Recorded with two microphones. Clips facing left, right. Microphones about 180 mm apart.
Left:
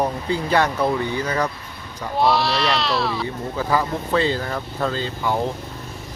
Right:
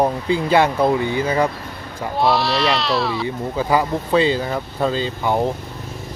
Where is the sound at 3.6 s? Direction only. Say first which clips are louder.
Right 3 dB; 15° right (ahead or behind).